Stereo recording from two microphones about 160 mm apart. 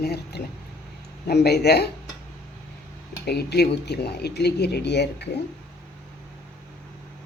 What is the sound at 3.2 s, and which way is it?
Speech, 90° left.